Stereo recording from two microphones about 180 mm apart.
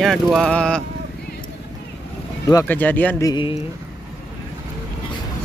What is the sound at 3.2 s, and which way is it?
Speech, 25° left (ahead or behind).